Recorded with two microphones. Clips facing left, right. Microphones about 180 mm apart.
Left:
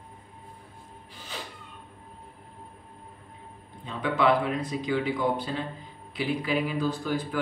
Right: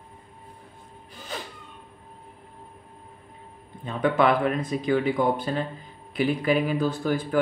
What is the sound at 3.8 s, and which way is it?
Speech, 50° right (ahead or behind).